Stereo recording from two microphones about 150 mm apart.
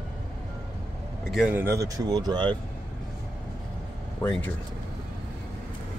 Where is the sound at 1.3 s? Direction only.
5° right (ahead or behind); by 2.6 s 30° right (ahead or behind).